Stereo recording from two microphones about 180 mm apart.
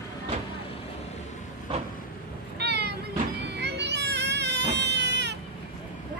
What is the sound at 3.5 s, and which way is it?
Children playing, 70° right (ahead or behind).